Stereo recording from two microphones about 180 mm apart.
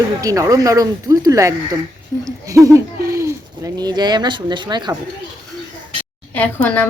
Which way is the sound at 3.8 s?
25° right (ahead or behind).